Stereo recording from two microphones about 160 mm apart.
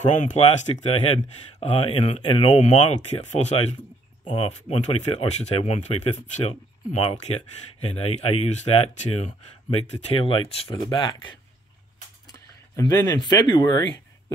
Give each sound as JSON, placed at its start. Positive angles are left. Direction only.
{"t": 0.0, "sound": "speech", "side_deg": 50}
{"t": 2.7, "sound": "speech", "side_deg": 45}